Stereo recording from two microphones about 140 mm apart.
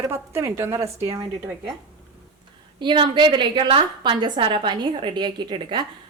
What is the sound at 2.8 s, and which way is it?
A woman's voice, 35° right (ahead or behind).